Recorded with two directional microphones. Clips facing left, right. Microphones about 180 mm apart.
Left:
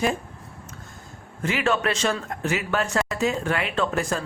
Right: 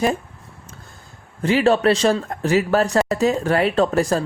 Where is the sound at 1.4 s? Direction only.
35° right (ahead or behind).